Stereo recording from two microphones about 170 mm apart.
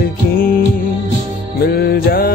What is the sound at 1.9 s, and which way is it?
Music, 60° left (ahead or behind).